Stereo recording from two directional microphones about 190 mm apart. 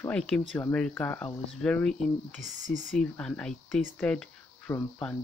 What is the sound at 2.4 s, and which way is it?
Speech, 40° right (ahead or behind).